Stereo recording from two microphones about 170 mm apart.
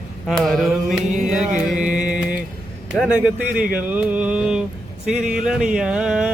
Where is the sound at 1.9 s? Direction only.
5° right (ahead or behind).